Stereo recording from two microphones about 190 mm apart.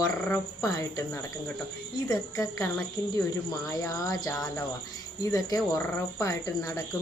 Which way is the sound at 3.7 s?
20° left (ahead or behind).